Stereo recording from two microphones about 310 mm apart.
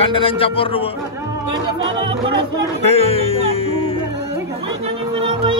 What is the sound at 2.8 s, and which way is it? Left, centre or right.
Music, centre.